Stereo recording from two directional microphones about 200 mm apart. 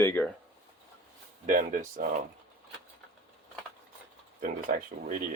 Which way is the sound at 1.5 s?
40° right (ahead or behind).